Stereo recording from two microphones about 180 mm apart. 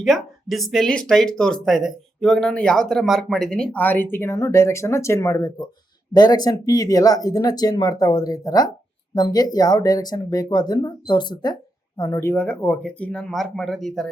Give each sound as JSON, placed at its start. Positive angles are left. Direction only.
{"t": 0.0, "sound": "speech", "side_deg": 0}